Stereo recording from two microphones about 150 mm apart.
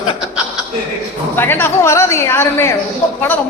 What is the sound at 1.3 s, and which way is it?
A woman's voice, 15° left (ahead or behind).